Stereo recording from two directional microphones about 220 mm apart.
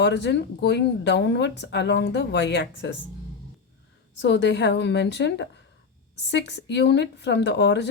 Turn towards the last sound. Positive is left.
turn(degrees=50)  # may be behind; listen again after turning